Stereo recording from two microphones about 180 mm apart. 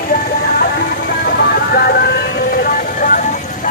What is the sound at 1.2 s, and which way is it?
Vehicle, 60° left (ahead or behind).